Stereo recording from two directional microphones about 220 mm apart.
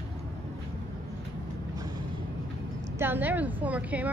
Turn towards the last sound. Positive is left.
turn(degrees=-5)  # may be behind; listen again after turning